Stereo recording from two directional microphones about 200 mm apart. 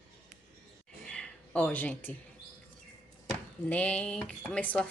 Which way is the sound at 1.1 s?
5° left (ahead or behind).